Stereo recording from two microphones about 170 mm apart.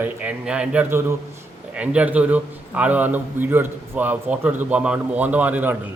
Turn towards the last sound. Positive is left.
turn(degrees=-10)  # may be behind; listen again after turning